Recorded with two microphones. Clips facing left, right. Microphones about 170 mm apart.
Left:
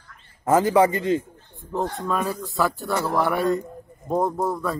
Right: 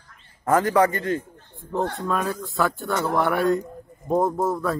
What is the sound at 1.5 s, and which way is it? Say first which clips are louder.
Speech: right 1 dB; centre (ahead or behind).